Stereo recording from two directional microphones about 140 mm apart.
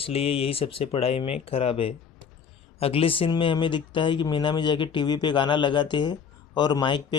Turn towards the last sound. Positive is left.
turn(degrees=35)  # may be behind; listen again after turning